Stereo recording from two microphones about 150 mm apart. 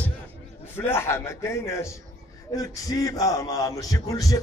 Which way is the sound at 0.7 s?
15° left (ahead or behind).